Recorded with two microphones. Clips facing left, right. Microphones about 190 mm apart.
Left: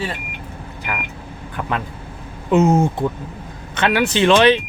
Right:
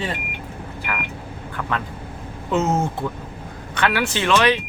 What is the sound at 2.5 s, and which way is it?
Speech, 15° left (ahead or behind).